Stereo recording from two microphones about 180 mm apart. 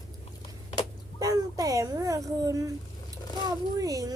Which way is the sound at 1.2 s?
20° right (ahead or behind).